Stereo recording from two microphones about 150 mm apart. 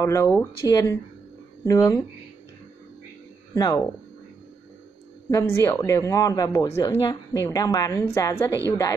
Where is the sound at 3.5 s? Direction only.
25° left (ahead or behind).